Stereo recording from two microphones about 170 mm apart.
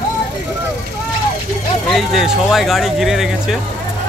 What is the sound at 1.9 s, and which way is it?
Speech, centre (ahead or behind).